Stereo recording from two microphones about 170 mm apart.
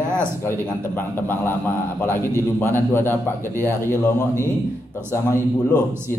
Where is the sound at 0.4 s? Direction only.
15° left (ahead or behind).